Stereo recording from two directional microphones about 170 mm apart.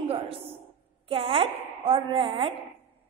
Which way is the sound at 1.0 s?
35° right (ahead or behind).